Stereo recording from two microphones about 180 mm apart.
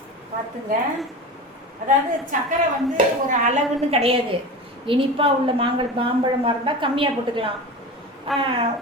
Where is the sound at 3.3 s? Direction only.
40° right (ahead or behind).